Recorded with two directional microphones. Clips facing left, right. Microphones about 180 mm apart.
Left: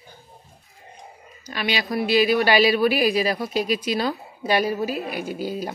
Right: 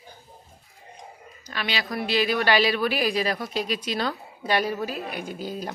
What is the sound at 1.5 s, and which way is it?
A woman's voice, 15° left (ahead or behind).